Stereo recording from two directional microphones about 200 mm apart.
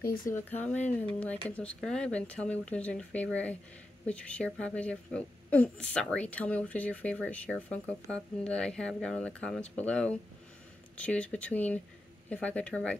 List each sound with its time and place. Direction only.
0.0 s speech: 45° left (ahead or behind)
0.3 s speech: 10° left (ahead or behind)